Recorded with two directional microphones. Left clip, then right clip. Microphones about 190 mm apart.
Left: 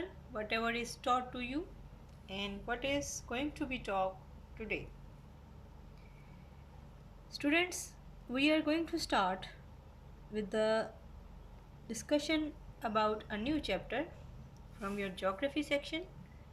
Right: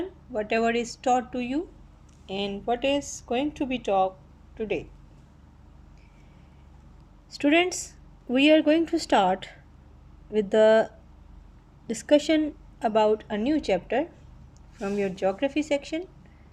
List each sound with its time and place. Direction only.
0.3 s speech: 40° right (ahead or behind)
7.3 s speech: 40° right (ahead or behind)
11.9 s speech: 45° right (ahead or behind)
14.8 s speech: 50° right (ahead or behind)
15.0 s speech: 35° right (ahead or behind)